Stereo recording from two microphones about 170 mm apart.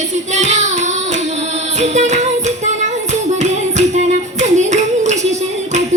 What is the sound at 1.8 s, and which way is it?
Music, 45° right (ahead or behind).